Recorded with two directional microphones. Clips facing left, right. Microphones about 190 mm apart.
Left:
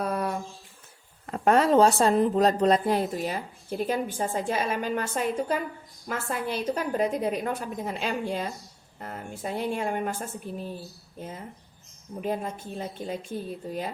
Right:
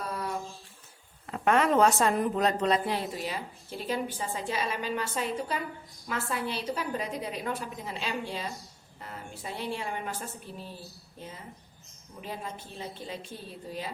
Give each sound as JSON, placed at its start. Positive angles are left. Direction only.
{"t": 0.0, "sound": "a sound", "side_deg": 60}
{"t": 1.3, "sound": "a woman's voice", "side_deg": 35}
{"t": 12.2, "sound": "a woman's voice", "side_deg": 50}